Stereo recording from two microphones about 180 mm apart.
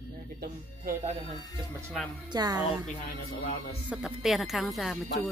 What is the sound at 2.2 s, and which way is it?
Speech, 20° right (ahead or behind).